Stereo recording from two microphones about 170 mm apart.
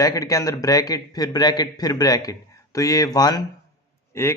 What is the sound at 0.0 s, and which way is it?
Speech, 20° left (ahead or behind).